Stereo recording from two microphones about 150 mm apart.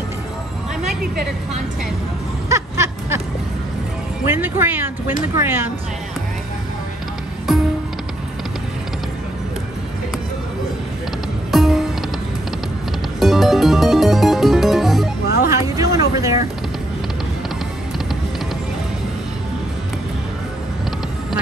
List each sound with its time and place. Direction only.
2.5 s a sound: 20° right (ahead or behind)
4.3 s speech: 15° right (ahead or behind)
7.5 s music: centre (ahead or behind)
11.5 s music: centre (ahead or behind)
13.2 s music: centre (ahead or behind)
15.2 s music: 90° left
15.5 s a sound: 20° right (ahead or behind)